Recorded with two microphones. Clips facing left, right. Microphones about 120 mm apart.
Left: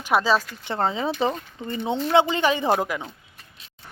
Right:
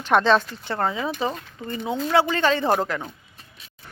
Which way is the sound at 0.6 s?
25° left (ahead or behind).